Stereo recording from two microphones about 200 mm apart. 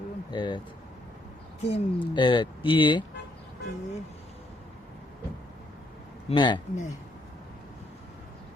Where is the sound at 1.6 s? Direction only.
25° left (ahead or behind).